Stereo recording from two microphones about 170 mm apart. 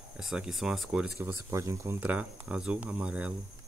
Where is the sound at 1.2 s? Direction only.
15° right (ahead or behind).